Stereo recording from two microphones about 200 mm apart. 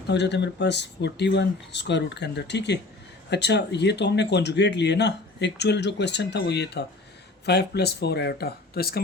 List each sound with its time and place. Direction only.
0.1 s speech: 60° left (ahead or behind)